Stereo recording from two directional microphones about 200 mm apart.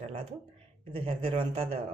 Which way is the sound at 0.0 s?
30° right (ahead or behind).